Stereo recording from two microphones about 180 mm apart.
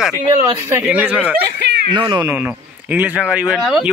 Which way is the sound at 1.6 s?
65° right (ahead or behind).